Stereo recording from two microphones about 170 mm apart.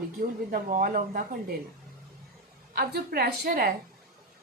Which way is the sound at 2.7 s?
65° right (ahead or behind).